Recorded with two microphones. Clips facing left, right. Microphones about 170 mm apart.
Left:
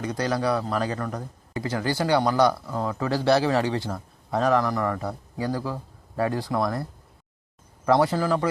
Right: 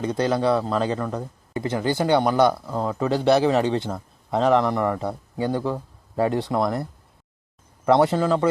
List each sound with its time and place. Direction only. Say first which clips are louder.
0.0 s a man's voice: right 4 dB; 25° right (ahead or behind)
7.9 s a man's voice: right 3 dB; 25° right (ahead or behind)